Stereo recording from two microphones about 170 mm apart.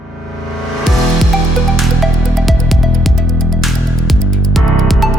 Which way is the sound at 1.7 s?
Centre (ahead or behind).